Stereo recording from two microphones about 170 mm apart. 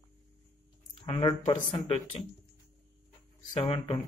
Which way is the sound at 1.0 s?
30° left (ahead or behind).